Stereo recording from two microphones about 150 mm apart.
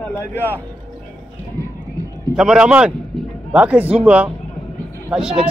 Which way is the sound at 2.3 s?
5° right (ahead or behind).